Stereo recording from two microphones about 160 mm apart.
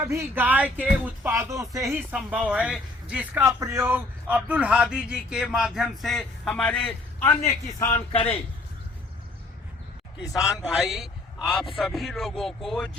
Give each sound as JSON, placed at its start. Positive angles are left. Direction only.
{"t": 0.0, "sound": "speech", "side_deg": -15}
{"t": 2.5, "sound": "speech", "side_deg": -5}
{"t": 8.1, "sound": "a man's voice", "side_deg": 35}
{"t": 10.2, "sound": "speech", "side_deg": 20}
{"t": 10.8, "sound": "speech", "side_deg": 0}